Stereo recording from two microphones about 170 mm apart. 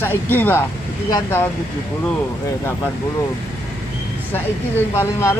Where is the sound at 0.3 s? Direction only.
10° left (ahead or behind).